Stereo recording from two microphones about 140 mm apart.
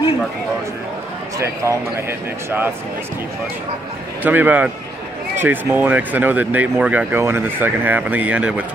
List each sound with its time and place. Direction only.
1.4 s a man's voice: 20° right (ahead or behind)
4.2 s speech: 15° right (ahead or behind)